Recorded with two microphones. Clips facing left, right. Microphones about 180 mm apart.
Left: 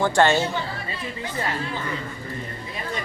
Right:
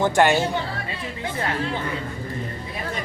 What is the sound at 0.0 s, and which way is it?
Speech, 15° right (ahead or behind).